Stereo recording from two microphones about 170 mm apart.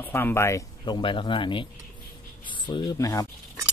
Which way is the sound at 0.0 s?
10° left (ahead or behind).